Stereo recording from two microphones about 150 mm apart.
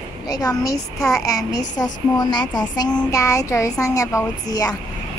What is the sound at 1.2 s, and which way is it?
Speech, 25° left (ahead or behind).